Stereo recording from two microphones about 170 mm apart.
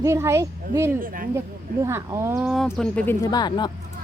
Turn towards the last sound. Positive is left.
turn(degrees=25)  # may be behind; listen again after turning